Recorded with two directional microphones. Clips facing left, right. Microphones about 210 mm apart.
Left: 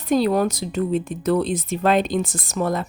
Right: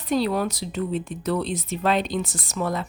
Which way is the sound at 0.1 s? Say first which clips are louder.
Left 4 dB; 45° left (ahead or behind).